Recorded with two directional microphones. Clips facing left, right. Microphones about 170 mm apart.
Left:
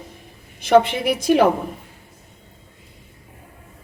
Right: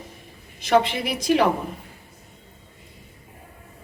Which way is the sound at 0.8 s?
55° left (ahead or behind).